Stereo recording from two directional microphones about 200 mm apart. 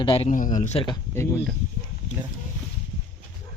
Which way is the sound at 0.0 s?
25° left (ahead or behind).